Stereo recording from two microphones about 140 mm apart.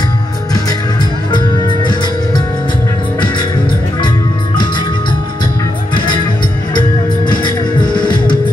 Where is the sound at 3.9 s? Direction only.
35° left (ahead or behind).